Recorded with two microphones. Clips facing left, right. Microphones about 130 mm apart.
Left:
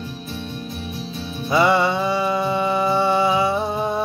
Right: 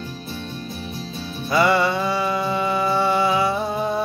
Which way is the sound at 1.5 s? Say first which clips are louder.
Left 1 dB; 20° left (ahead or behind).